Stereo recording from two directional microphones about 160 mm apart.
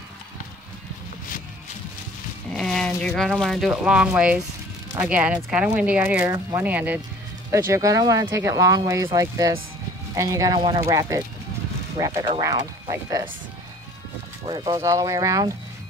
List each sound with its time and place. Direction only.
2.5 s speech: 5° left (ahead or behind); by 13.3 s 25° right (ahead or behind)
14.4 s speech: 25° right (ahead or behind)